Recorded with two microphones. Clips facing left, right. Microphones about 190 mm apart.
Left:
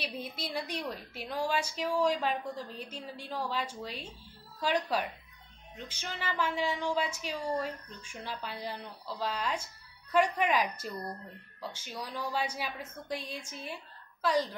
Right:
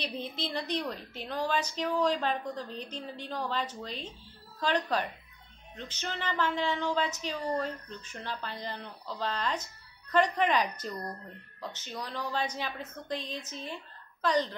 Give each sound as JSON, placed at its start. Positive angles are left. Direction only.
{"t": 0.0, "sound": "a woman's voice", "side_deg": 10}